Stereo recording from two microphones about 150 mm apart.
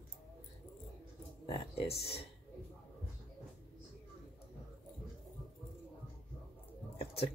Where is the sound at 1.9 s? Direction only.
40° left (ahead or behind).